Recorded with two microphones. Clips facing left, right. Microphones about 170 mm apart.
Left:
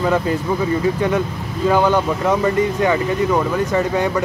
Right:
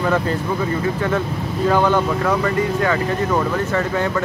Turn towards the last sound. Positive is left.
turn(degrees=15)  # may be behind; listen again after turning